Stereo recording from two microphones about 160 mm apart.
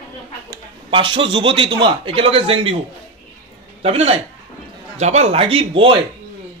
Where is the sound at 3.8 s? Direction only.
40° right (ahead or behind).